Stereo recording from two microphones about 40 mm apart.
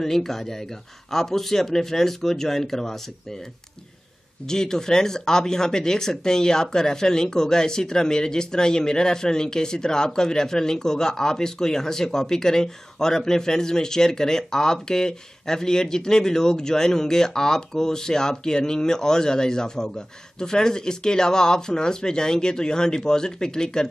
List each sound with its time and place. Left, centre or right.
0.0 s speech: centre
4.5 s speech: centre